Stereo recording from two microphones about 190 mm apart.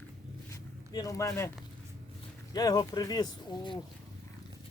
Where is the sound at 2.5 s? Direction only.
20° left (ahead or behind).